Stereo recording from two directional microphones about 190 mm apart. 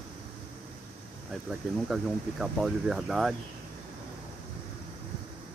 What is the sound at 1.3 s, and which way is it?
Speech, centre (ahead or behind).